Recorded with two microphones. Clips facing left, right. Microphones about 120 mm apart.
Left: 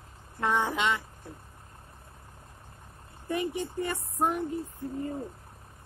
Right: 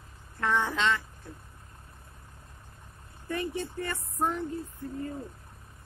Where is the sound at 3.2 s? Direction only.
15° left (ahead or behind).